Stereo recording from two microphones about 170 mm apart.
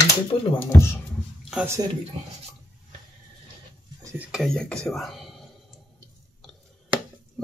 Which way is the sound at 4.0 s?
15° right (ahead or behind).